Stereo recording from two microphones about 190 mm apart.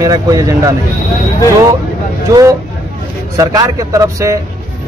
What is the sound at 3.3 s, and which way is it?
Speech, 20° right (ahead or behind).